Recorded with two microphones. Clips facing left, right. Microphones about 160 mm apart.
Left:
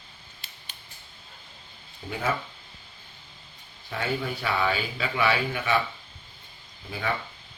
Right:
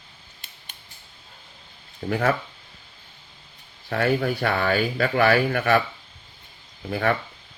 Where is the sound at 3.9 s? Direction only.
65° right (ahead or behind).